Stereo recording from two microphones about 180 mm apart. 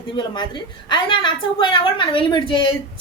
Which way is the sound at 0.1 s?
25° left (ahead or behind).